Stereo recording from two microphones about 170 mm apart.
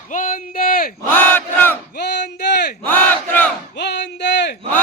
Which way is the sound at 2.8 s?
10° left (ahead or behind).